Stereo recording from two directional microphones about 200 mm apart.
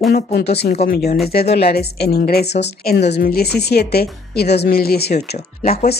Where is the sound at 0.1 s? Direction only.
55° left (ahead or behind).